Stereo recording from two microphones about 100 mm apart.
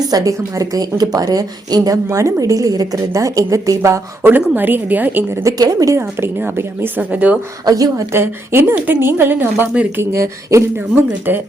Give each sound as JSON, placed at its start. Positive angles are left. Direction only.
{"t": 0.1, "sound": "a woman's voice", "side_deg": -35}
{"t": 4.3, "sound": "speech", "side_deg": -20}
{"t": 5.4, "sound": "a woman's voice", "side_deg": -35}
{"t": 6.0, "sound": "speech", "side_deg": -25}
{"t": 7.6, "sound": "a woman's voice", "side_deg": -35}
{"t": 8.1, "sound": "speech", "side_deg": -25}